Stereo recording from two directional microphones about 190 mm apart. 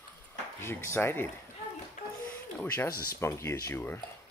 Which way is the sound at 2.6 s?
10° left (ahead or behind).